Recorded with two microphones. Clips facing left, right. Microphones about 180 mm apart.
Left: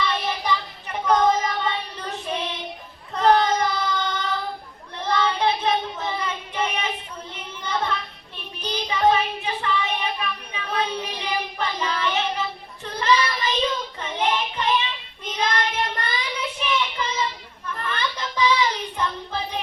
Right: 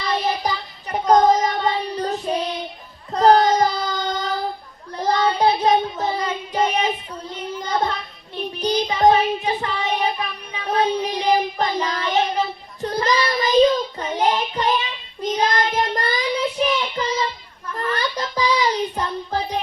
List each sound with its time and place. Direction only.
0.0 s child singing: 40° right (ahead or behind)